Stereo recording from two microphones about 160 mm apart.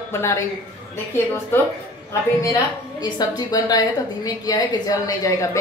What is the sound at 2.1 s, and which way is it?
A woman's voice, 20° left (ahead or behind).